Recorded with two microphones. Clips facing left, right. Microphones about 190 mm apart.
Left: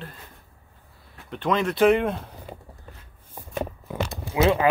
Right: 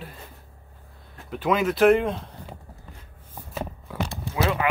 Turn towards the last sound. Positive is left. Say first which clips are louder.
# left 4 dB
turn(degrees=25)  # may be behind; listen again after turning